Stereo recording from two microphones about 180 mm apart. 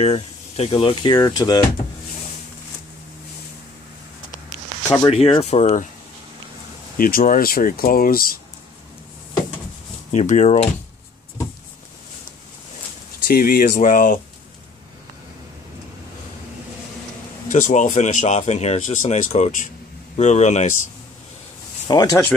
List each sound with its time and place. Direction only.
0.0 s speech: 30° left (ahead or behind)
4.8 s speech: 20° left (ahead or behind)
5.1 s speech: 35° left (ahead or behind)
7.0 s speech: 55° left (ahead or behind)
10.1 s speech: 40° left (ahead or behind)
13.3 s speech: 55° left (ahead or behind)
17.5 s speech: 45° left (ahead or behind)
21.8 s speech: 20° left (ahead or behind)